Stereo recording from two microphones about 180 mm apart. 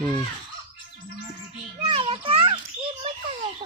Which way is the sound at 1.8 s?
30° right (ahead or behind).